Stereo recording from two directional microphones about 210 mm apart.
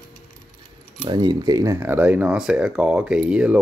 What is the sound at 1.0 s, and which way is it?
Speech, 20° right (ahead or behind).